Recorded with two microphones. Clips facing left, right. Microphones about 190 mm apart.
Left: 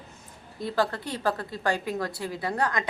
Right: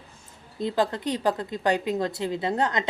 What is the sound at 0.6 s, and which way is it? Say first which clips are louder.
Speech: right 2 dB; 20° right (ahead or behind).